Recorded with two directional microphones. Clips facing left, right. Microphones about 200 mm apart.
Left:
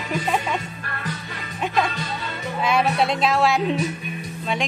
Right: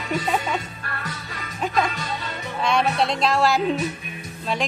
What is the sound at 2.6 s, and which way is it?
A woman's voice, centre (ahead or behind).